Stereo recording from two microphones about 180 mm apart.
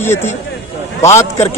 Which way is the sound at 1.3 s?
35° left (ahead or behind).